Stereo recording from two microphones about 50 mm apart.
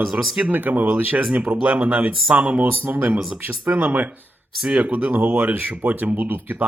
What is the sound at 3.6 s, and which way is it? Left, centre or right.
Speech, right.